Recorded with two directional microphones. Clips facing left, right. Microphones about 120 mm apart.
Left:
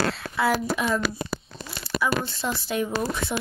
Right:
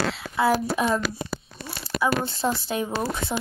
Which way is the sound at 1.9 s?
20° right (ahead or behind).